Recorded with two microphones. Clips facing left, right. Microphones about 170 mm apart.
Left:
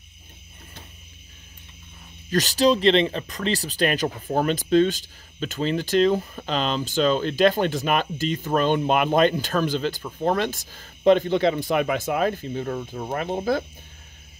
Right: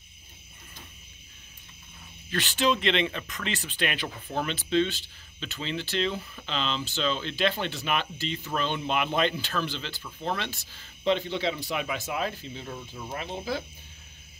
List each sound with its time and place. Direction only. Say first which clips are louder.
2.3 s speech: left 7 dB; 40° left (ahead or behind); by 13.7 s 55° left (ahead or behind)